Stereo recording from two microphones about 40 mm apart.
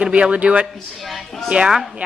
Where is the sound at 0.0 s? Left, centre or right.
Right.